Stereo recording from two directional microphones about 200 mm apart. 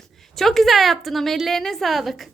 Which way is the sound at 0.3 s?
Centre (ahead or behind).